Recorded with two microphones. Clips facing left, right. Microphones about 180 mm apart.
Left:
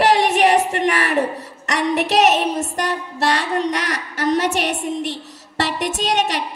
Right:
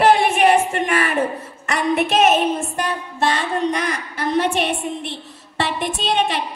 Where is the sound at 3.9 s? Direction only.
40° left (ahead or behind).